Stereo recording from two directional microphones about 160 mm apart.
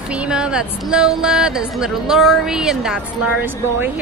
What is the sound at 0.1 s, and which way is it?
Speech, 5° right (ahead or behind).